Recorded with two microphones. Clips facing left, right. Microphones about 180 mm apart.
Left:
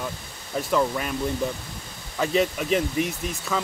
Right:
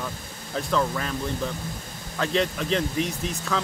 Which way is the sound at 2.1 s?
5° left (ahead or behind).